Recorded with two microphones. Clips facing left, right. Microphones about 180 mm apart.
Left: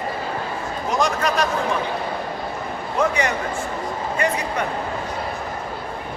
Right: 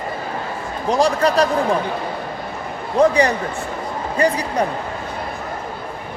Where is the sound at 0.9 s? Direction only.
35° right (ahead or behind).